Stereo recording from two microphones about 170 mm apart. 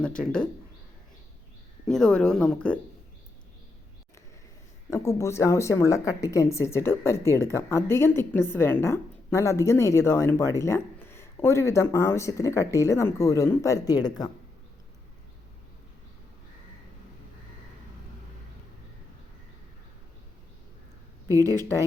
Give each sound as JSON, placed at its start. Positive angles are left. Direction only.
{"t": 0.0, "sound": "speech", "side_deg": 5}
{"t": 1.9, "sound": "speech", "side_deg": 5}
{"t": 4.9, "sound": "speech", "side_deg": 20}